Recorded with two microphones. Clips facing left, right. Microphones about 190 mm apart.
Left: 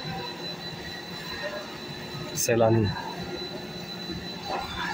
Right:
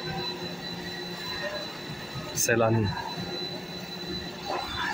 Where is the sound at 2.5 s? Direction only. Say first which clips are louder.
Left 2 dB; 20° left (ahead or behind).